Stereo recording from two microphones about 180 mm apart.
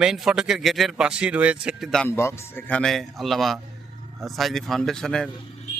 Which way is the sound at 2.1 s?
15° left (ahead or behind).